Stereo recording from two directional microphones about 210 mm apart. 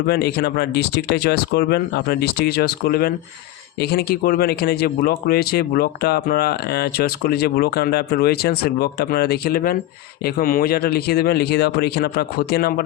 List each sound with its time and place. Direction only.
0.1 s speech: 50° left (ahead or behind)